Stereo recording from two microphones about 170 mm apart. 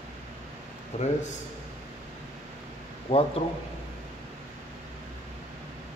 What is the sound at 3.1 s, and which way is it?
Speech, 35° left (ahead or behind).